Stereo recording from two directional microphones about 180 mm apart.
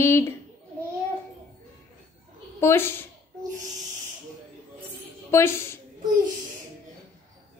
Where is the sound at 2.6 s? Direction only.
15° left (ahead or behind).